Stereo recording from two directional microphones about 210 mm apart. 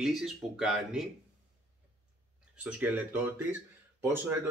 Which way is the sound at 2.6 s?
5° right (ahead or behind).